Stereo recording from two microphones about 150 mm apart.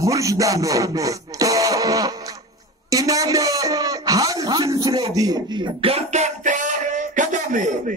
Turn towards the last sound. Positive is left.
turn(degrees=-60)  # may be behind; listen again after turning